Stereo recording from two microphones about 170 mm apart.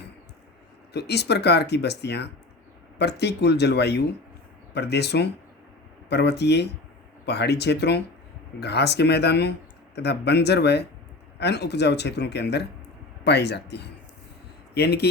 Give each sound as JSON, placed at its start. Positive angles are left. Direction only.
{"t": 0.9, "sound": "speech", "side_deg": 75}